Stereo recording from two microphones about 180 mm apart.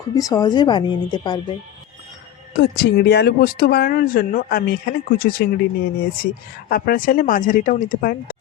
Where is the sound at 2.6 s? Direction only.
65° left (ahead or behind).